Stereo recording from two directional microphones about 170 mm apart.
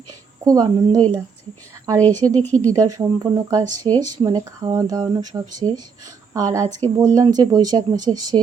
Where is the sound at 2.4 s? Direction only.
10° left (ahead or behind).